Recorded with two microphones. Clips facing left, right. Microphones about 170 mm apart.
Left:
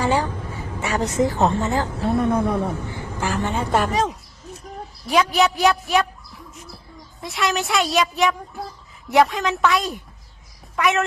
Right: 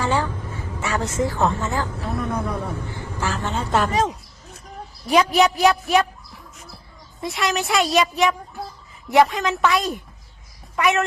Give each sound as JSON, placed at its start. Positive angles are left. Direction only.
{"t": 0.0, "sound": "vehicle", "side_deg": 15}
{"t": 0.8, "sound": "a woman's voice", "side_deg": 15}
{"t": 2.9, "sound": "vehicle", "side_deg": 15}
{"t": 3.4, "sound": "speech", "side_deg": 10}
{"t": 5.0, "sound": "speech", "side_deg": 0}
{"t": 7.2, "sound": "a woman's voice", "side_deg": 0}